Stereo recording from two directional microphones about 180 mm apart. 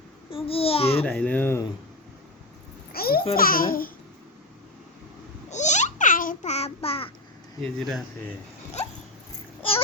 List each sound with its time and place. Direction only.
0.3 s a child's voice: 30° left (ahead or behind)
1.0 s speech: 5° left (ahead or behind)
2.9 s babbling: 55° left (ahead or behind)
3.3 s speech: 55° left (ahead or behind)
5.5 s babbling: 40° left (ahead or behind)
7.6 s speech: centre (ahead or behind)